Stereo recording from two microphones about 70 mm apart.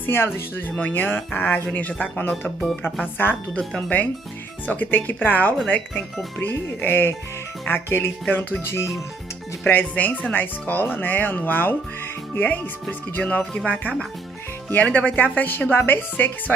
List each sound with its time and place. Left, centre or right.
0.0 s speech: left
9.7 s speech: left
13.1 s speech: left
13.4 s music: centre
13.7 s speech: left